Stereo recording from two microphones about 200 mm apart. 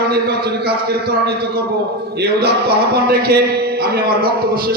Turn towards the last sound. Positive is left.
turn(degrees=-50)  # may be behind; listen again after turning